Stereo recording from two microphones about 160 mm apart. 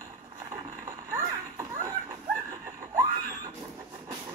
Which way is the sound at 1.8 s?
15° right (ahead or behind).